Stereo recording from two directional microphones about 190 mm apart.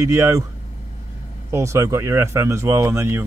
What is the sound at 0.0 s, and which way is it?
Speech, 15° right (ahead or behind).